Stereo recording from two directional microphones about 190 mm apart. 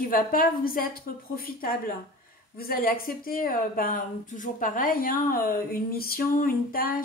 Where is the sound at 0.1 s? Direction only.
50° left (ahead or behind).